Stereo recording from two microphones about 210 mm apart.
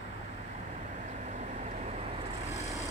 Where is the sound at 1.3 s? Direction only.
35° right (ahead or behind).